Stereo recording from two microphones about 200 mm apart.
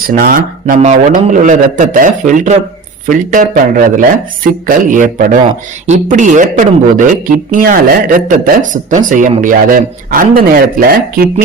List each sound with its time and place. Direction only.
0.0 s speech: 45° right (ahead or behind)